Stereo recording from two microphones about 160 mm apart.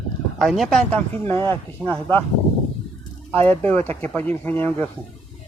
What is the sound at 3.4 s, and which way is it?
Speech, 10° left (ahead or behind).